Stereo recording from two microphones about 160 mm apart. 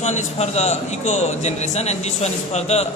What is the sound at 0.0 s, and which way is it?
A man's voice, 45° left (ahead or behind).